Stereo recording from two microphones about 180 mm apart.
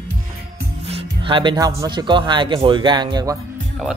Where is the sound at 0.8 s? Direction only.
30° right (ahead or behind).